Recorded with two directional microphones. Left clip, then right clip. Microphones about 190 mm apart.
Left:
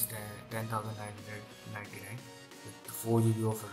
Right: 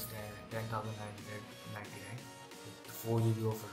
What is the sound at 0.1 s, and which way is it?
Music, 20° left (ahead or behind).